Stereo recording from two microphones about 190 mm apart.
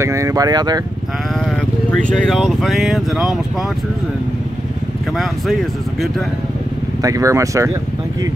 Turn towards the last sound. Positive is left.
turn(degrees=-15)  # may be behind; listen again after turning